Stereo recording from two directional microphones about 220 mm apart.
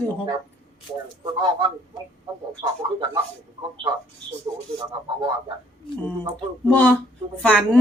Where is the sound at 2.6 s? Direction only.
20° right (ahead or behind).